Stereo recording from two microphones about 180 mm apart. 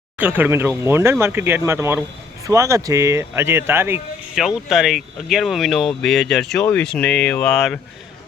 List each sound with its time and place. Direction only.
0.2 s speech: 10° right (ahead or behind)
4.4 s speech: centre (ahead or behind)